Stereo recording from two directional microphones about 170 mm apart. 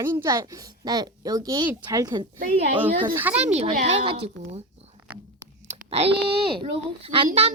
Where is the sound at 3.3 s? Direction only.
40° right (ahead or behind).